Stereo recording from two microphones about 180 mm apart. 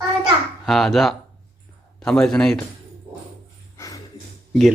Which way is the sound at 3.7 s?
20° left (ahead or behind).